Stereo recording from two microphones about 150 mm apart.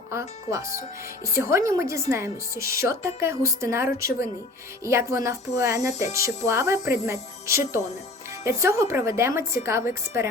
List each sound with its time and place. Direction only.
0.1 s a woman's voice: 20° right (ahead or behind)